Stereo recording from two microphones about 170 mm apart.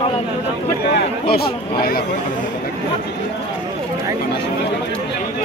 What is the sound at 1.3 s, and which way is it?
Speech, 65° left (ahead or behind).